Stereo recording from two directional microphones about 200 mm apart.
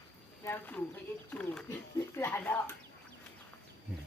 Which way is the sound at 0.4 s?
10° left (ahead or behind).